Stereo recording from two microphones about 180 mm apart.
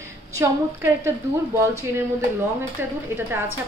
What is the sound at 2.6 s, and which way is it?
Speech, 15° right (ahead or behind).